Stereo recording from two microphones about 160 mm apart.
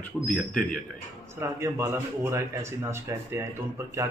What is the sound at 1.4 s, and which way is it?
A man's voice, 15° right (ahead or behind).